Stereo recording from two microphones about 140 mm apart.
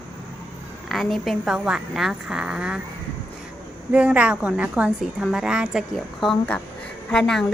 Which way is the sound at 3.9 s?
10° right (ahead or behind).